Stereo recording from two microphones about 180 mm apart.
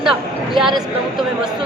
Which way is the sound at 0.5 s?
Centre (ahead or behind).